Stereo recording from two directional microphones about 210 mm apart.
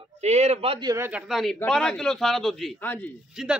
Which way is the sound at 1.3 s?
Centre (ahead or behind).